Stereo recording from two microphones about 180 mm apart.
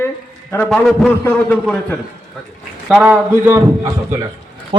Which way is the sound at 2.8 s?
10° right (ahead or behind).